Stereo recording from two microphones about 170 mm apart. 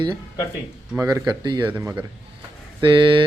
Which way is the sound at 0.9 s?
20° right (ahead or behind).